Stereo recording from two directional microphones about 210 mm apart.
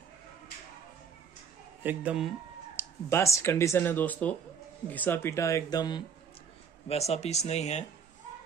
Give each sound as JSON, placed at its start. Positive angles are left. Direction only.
{"t": 1.8, "sound": "speech", "side_deg": -5}
{"t": 2.8, "sound": "speech", "side_deg": 10}
{"t": 6.9, "sound": "speech", "side_deg": 30}